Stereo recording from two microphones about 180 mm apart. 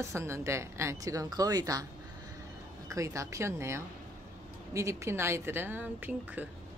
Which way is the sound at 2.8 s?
15° right (ahead or behind).